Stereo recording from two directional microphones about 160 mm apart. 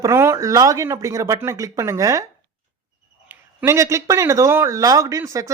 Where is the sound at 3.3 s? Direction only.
15° right (ahead or behind).